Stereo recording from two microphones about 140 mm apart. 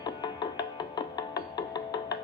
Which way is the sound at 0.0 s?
30° left (ahead or behind).